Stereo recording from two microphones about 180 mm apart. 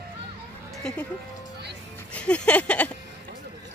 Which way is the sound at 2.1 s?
5° left (ahead or behind).